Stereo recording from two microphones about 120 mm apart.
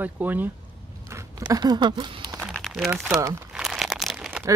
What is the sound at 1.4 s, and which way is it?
Speech, 35° right (ahead or behind).